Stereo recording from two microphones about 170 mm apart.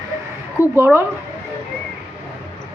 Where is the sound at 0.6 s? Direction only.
15° right (ahead or behind).